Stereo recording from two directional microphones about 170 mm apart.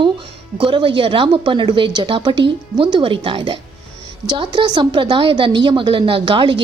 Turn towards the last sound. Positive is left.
turn(degrees=-30)  # may be behind; listen again after turning